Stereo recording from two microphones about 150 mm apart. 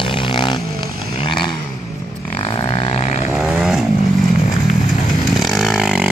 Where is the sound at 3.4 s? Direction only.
5° right (ahead or behind).